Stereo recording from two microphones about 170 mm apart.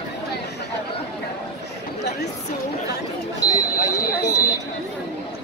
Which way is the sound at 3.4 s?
20° left (ahead or behind).